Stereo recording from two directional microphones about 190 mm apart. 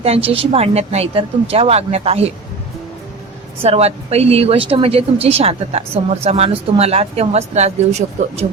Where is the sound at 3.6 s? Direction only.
30° right (ahead or behind).